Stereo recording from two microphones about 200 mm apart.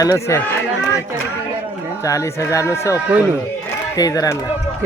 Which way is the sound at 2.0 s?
15° left (ahead or behind).